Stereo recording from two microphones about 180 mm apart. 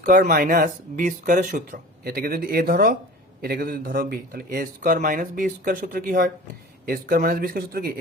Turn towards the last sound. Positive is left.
turn(degrees=-60)  # may be behind; listen again after turning